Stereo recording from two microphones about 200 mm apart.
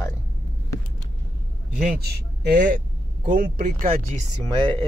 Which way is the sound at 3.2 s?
40° right (ahead or behind).